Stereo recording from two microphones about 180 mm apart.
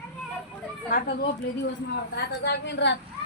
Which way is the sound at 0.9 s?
55° left (ahead or behind).